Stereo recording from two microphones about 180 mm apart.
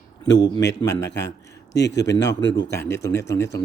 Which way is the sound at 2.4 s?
85° left.